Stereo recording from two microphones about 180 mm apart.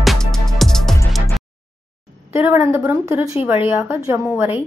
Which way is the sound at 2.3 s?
10° right (ahead or behind).